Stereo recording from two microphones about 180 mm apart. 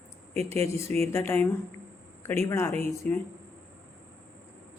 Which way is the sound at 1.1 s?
10° left (ahead or behind).